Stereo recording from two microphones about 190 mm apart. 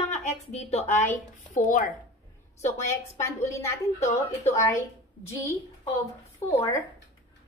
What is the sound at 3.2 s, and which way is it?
A woman's voice, 15° left (ahead or behind).